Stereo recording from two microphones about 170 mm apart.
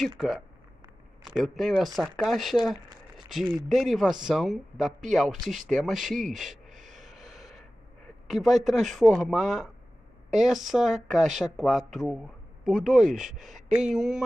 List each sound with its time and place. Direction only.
1.2 s speech: centre (ahead or behind)
6.7 s a sound: 45° right (ahead or behind)
7.1 s gasp: centre (ahead or behind)
8.3 s speech: centre (ahead or behind)